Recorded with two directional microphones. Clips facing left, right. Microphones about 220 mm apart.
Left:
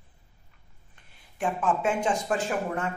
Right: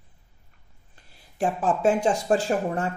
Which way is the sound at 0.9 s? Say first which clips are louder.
Right 8 dB; 35° right (ahead or behind).